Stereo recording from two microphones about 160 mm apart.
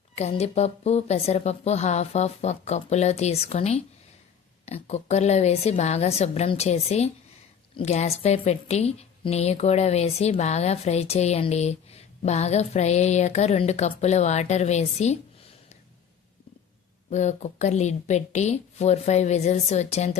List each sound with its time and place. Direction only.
0.2 s a woman's voice: 40° left (ahead or behind)
17.1 s a woman's voice: 45° left (ahead or behind)